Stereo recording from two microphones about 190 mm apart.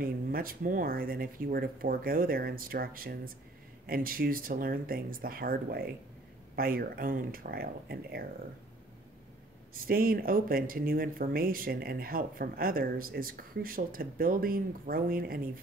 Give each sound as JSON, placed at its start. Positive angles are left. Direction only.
{"t": 0.0, "sound": "speech", "side_deg": -50}
{"t": 9.8, "sound": "speech", "side_deg": -50}